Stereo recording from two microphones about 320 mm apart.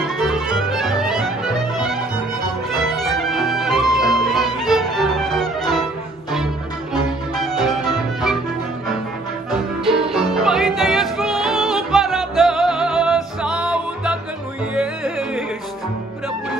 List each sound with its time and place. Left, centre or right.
0.0 s music: centre
7.3 s music: centre
10.1 s music: centre